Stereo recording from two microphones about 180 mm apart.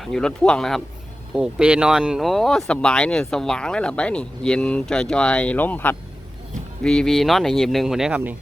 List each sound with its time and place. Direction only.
0.0 s speech: 5° left (ahead or behind)